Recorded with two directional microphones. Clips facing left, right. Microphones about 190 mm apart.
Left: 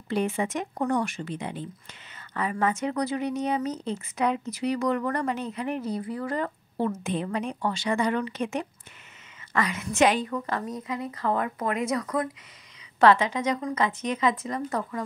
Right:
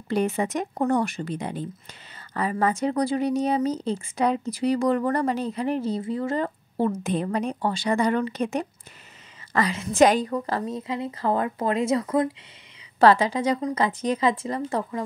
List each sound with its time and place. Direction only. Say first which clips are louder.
0.1 s a woman's voice: right 3 dB; 40° right (ahead or behind)